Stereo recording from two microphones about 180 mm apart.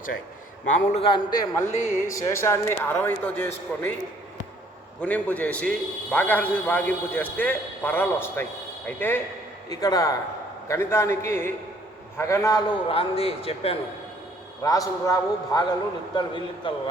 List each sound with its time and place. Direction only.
0.6 s a man's voice: 45° left (ahead or behind)
1.0 s a man's voice: 25° left (ahead or behind); by 3.9 s 5° left (ahead or behind)
4.9 s a man's voice: 10° left (ahead or behind)
12.9 s speech: 30° left (ahead or behind)
14.6 s a man's voice: 20° left (ahead or behind)